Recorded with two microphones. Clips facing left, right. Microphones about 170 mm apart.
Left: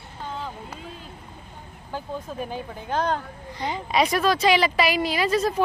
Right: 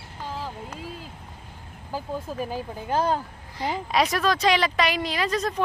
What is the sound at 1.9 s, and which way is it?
Speech, 5° right (ahead or behind).